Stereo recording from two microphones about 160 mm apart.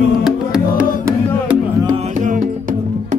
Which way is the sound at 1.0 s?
20° right (ahead or behind).